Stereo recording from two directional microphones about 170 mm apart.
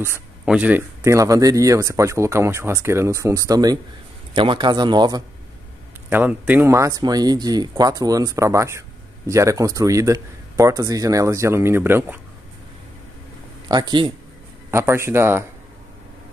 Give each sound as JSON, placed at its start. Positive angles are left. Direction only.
{"t": 0.5, "sound": "speech", "side_deg": -10}
{"t": 6.0, "sound": "speech", "side_deg": -10}
{"t": 13.7, "sound": "speech", "side_deg": -25}